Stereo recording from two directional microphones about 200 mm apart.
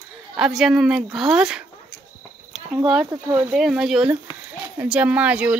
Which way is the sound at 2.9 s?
5° right (ahead or behind).